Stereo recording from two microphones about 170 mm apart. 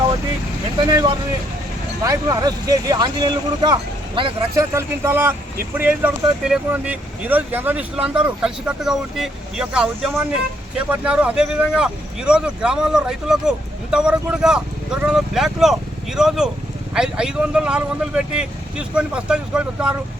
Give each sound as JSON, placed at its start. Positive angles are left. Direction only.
{"t": 0.9, "sound": "speech", "side_deg": -25}
{"t": 4.5, "sound": "speech", "side_deg": -15}